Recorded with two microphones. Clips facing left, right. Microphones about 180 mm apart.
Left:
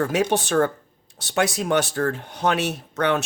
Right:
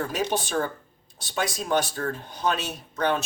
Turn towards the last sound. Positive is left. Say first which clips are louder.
# left 3 dB
turn(degrees=70)  # may be behind; listen again after turning